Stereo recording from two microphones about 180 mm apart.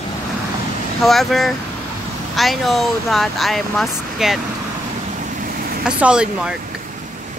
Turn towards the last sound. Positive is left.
turn(degrees=-5)  # may be behind; listen again after turning